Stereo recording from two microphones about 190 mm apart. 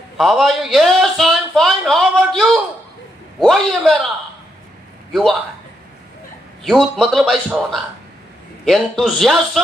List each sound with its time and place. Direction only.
0.2 s a man's voice: centre (ahead or behind)
6.6 s a man's voice: centre (ahead or behind)